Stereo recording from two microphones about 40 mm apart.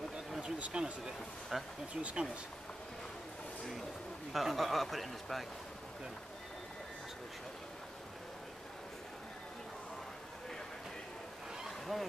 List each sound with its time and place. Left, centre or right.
0.7 s speech: right
1.5 s speech: centre
2.0 s speech: right
4.3 s a man's voice: centre
11.9 s a man's voice: centre